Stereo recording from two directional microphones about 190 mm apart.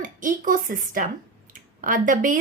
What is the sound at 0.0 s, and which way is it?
A woman's voice, 45° right (ahead or behind).